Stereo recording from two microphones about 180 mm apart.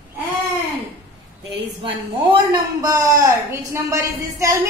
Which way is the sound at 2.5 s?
20° right (ahead or behind).